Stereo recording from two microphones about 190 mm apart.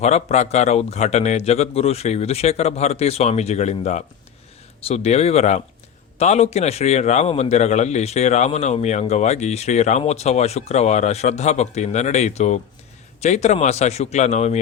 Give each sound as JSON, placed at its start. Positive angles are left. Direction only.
{"t": 0.0, "sound": "a man's voice", "side_deg": 35}